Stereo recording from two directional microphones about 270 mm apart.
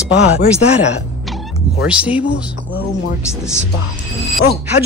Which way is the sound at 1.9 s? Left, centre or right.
Centre.